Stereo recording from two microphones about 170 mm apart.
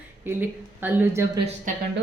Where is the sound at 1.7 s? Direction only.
50° right (ahead or behind).